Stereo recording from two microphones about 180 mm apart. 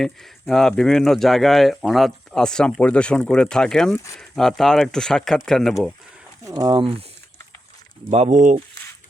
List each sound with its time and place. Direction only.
0.0 s speech: centre (ahead or behind)
3.9 s speech: 15° left (ahead or behind)
4.2 s speech: centre (ahead or behind)
6.4 s speech: 20° right (ahead or behind)
8.1 s speech: 40° right (ahead or behind)